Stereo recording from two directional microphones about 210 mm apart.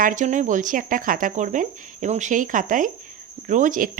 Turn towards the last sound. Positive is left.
turn(degrees=-40)  # may be behind; listen again after turning